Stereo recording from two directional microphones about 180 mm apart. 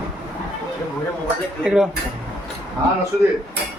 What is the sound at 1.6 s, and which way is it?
Speech, 5° right (ahead or behind).